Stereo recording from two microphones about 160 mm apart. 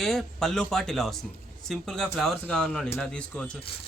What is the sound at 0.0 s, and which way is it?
Speech, centre (ahead or behind).